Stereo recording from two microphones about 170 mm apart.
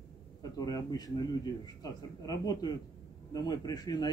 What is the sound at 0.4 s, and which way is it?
A man's voice, 20° left (ahead or behind).